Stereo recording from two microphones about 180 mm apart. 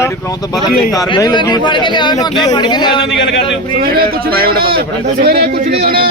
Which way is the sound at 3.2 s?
80° left.